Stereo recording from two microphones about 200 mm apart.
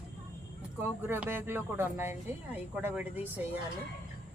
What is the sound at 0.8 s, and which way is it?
Speech, 10° right (ahead or behind).